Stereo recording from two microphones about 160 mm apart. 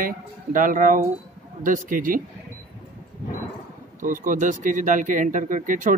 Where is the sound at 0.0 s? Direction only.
60° right (ahead or behind).